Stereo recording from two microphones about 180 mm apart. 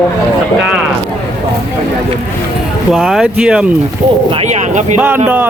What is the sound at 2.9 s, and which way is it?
Speech, centre (ahead or behind).